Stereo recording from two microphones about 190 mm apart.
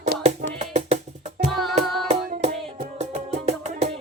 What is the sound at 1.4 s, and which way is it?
Music, centre (ahead or behind).